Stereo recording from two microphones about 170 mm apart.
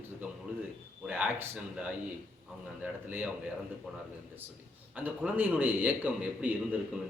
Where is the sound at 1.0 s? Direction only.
10° right (ahead or behind).